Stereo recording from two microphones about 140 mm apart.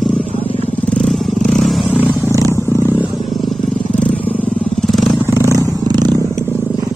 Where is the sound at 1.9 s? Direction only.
10° right (ahead or behind).